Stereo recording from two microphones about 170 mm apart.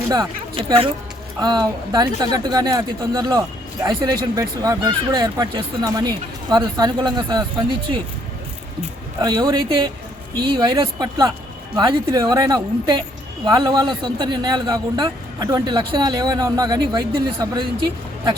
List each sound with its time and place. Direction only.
0.1 s a man's voice: 25° right (ahead or behind)
9.2 s a man's voice: 25° right (ahead or behind)